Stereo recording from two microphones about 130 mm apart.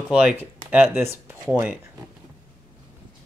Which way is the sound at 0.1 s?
10° right (ahead or behind).